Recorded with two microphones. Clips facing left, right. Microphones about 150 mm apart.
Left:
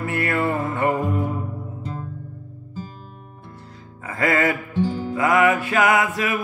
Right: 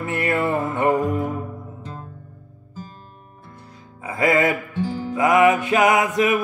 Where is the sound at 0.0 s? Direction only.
20° right (ahead or behind).